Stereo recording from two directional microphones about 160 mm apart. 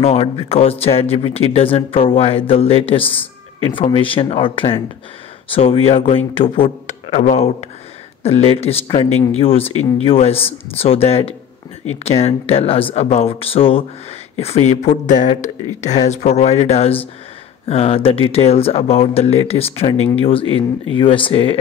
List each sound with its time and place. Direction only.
0.0 s speech: 40° left (ahead or behind)